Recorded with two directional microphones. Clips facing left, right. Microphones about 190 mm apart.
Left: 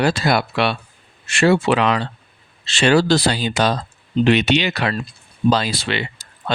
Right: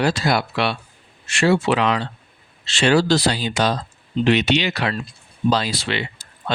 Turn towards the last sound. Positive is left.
turn(degrees=60)  # may be behind; listen again after turning